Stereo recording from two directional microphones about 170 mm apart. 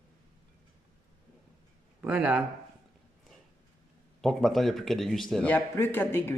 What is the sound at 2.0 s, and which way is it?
Speech, 5° right (ahead or behind).